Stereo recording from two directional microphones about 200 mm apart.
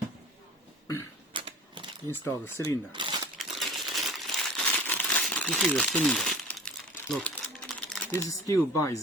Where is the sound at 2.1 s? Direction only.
10° left (ahead or behind).